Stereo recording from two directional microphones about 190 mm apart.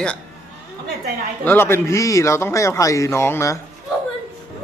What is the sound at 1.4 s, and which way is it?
A man's voice, 10° left (ahead or behind).